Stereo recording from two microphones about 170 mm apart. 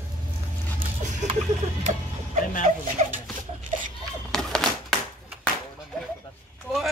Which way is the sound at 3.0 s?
40° right (ahead or behind).